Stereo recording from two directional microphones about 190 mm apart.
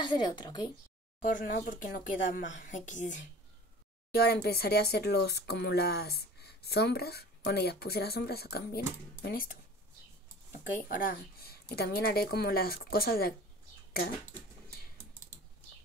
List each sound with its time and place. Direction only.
0.0 s a woman's voice: 25° left (ahead or behind)
1.2 s a woman's voice: 45° left (ahead or behind)
4.1 s speech: 55° left (ahead or behind)